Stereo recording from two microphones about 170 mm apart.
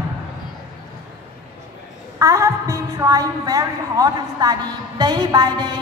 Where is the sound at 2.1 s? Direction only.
20° right (ahead or behind).